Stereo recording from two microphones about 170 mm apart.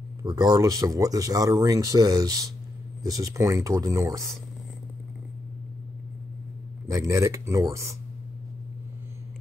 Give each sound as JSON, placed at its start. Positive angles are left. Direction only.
{"t": 0.2, "sound": "speech", "side_deg": -25}
{"t": 6.9, "sound": "speech", "side_deg": -20}